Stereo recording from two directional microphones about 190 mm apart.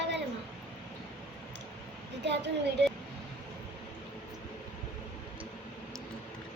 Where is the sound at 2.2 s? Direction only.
65° right (ahead or behind).